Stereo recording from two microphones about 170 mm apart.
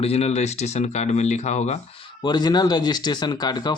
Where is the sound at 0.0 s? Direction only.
35° left (ahead or behind).